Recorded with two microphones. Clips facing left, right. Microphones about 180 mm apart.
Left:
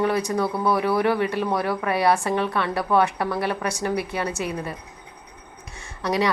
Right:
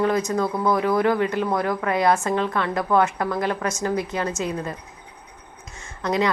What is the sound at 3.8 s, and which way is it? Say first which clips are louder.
Speech: right 1 dB; 15° left (ahead or behind).